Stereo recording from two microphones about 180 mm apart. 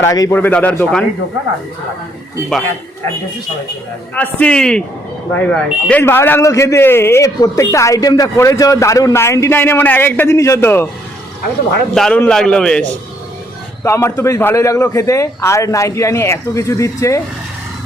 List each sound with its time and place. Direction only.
0.0 s speech: 15° left (ahead or behind)
4.1 s a man's voice: 10° left (ahead or behind)
11.9 s a man's voice: 5° left (ahead or behind)
13.8 s speech: 15° left (ahead or behind)